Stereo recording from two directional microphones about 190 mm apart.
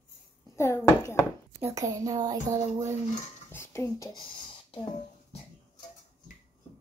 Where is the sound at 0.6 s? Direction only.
15° left (ahead or behind).